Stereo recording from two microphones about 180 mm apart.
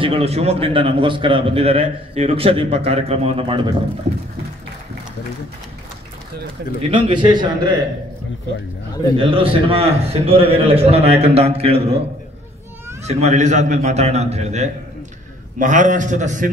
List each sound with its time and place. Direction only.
0.0 s a man's voice: 30° right (ahead or behind)
6.8 s a man's voice: 25° right (ahead or behind)
9.1 s a man's voice: 30° right (ahead or behind)
13.0 s a man's voice: 35° right (ahead or behind)